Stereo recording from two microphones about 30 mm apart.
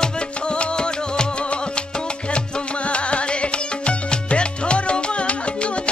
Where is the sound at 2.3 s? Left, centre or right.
Left.